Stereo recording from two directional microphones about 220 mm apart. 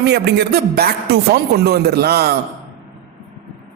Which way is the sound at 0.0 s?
50° right (ahead or behind).